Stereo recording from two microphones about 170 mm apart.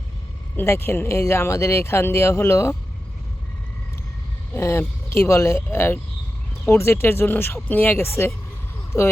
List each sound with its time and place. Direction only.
0.5 s speech: 15° left (ahead or behind)
4.5 s speech: 15° left (ahead or behind)